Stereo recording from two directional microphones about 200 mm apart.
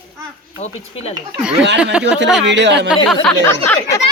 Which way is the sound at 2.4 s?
60° right (ahead or behind).